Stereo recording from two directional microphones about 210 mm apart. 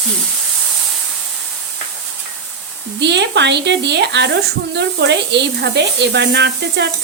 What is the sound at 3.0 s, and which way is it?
Speech, 55° right (ahead or behind).